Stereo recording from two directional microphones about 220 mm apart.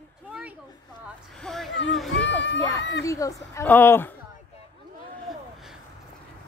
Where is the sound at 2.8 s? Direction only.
50° left (ahead or behind).